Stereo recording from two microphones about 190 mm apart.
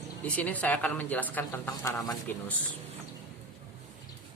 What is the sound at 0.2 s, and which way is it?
Speech, 10° left (ahead or behind).